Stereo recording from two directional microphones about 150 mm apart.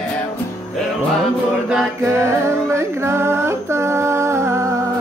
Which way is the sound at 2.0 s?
20° right (ahead or behind).